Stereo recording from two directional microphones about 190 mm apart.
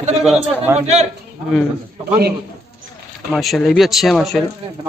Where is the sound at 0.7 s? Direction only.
35° right (ahead or behind).